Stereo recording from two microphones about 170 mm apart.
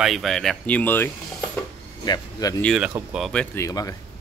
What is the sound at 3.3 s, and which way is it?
Speech, 5° left (ahead or behind).